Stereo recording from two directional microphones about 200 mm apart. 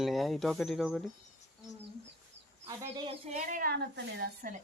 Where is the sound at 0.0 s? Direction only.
Centre (ahead or behind).